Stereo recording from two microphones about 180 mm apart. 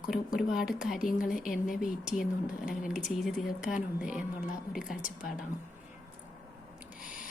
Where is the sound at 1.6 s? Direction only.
45° left (ahead or behind).